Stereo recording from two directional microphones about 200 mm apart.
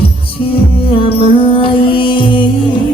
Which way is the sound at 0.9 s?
25° left (ahead or behind).